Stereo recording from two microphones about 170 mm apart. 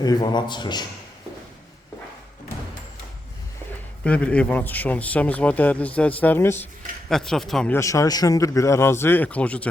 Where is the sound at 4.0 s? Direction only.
5° left (ahead or behind).